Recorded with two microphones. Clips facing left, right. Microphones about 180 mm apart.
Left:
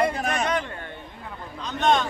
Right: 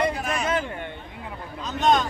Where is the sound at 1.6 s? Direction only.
Centre (ahead or behind).